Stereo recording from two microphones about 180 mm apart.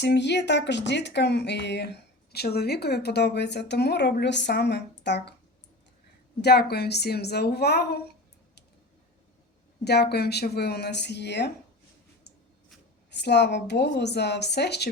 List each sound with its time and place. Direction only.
0.0 s speech: 70° left (ahead or behind)
6.4 s speech: 60° left (ahead or behind)
9.8 s speech: 65° left (ahead or behind)
13.1 s speech: 70° left (ahead or behind)